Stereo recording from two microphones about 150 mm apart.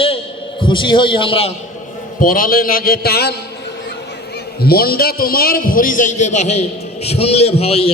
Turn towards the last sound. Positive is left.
turn(degrees=40)  # may be behind; listen again after turning